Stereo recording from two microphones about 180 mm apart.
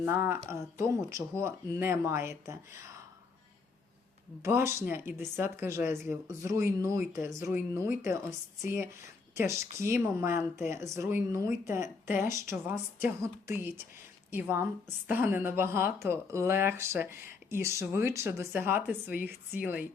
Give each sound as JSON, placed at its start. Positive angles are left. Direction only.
{"t": 0.0, "sound": "a woman's voice", "side_deg": -10}
{"t": 4.4, "sound": "a woman's voice", "side_deg": -15}